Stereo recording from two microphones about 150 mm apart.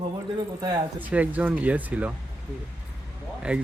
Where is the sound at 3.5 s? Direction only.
10° right (ahead or behind).